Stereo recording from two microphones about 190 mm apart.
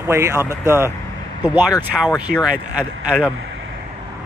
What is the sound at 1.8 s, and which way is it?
Speech, centre (ahead or behind).